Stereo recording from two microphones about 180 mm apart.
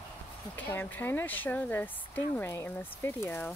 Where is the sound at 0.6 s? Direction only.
10° left (ahead or behind).